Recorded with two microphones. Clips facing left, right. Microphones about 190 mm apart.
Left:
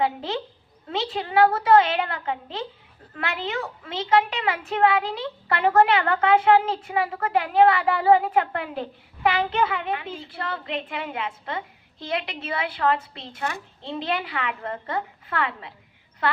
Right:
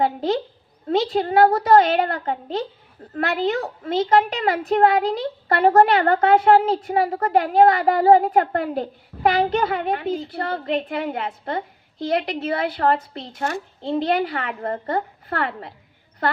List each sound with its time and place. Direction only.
0.0 s a woman's voice: 40° right (ahead or behind)